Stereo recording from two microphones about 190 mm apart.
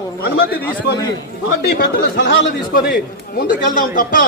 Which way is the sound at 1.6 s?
55° left (ahead or behind).